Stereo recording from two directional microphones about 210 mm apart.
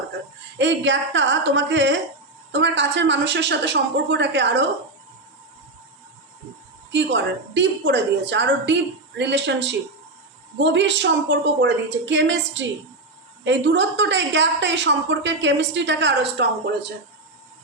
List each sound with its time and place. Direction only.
0.6 s a woman's voice: 60° right (ahead or behind)
6.9 s a woman's voice: 60° right (ahead or behind)